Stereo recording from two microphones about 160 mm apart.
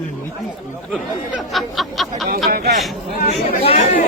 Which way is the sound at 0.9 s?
Centre (ahead or behind).